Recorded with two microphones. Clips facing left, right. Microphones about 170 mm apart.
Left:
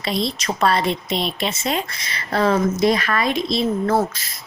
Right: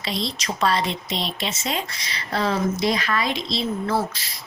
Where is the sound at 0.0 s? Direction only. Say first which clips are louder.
Left 5 dB; 55° left (ahead or behind).